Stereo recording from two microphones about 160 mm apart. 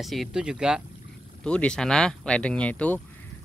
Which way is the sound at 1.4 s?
5° left (ahead or behind).